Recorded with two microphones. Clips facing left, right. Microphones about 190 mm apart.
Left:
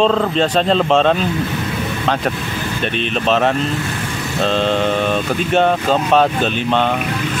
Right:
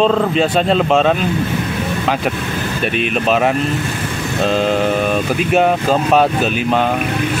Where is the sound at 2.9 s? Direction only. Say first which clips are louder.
Right 1 dB; 10° right (ahead or behind).